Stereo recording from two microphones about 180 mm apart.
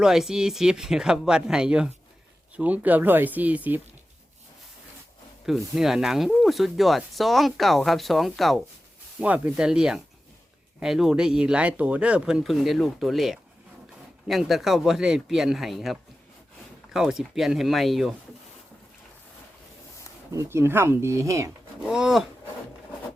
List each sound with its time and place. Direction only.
0.0 s speech: 5° right (ahead or behind)
5.5 s speech: centre (ahead or behind)
20.3 s speech: 15° right (ahead or behind)
21.8 s speech: 5° right (ahead or behind)